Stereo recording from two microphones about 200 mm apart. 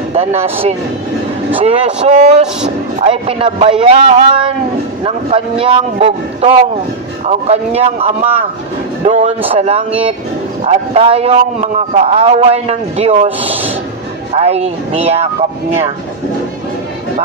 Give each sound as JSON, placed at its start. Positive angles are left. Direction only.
{"t": 0.1, "sound": "a man's voice", "side_deg": -30}